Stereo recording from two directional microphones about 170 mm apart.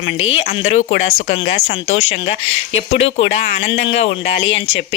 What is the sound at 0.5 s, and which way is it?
Speech, 40° left (ahead or behind).